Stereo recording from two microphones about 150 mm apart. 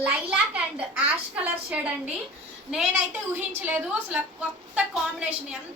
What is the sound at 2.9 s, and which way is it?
A woman's voice, 10° right (ahead or behind).